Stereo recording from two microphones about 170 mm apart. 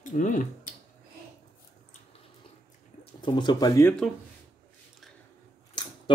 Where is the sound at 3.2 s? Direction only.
25° left (ahead or behind).